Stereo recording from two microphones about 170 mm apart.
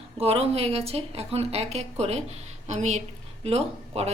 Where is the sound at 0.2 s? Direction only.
35° right (ahead or behind).